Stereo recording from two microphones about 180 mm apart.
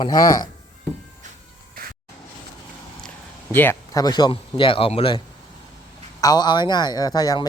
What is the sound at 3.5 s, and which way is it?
Speech, 10° left (ahead or behind).